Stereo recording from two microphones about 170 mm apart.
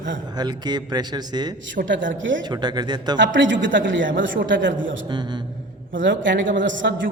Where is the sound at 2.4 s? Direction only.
25° right (ahead or behind).